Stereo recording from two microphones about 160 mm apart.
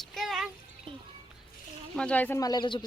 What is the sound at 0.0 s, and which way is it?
Music, centre (ahead or behind).